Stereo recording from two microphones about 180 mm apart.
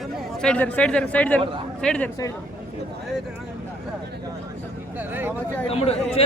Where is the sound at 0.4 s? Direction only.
10° left (ahead or behind).